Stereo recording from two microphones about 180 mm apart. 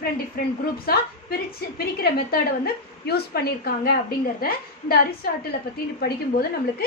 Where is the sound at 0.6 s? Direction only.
55° left (ahead or behind).